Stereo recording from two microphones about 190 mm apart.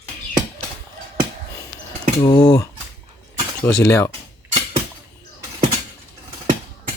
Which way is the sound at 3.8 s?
15° left (ahead or behind).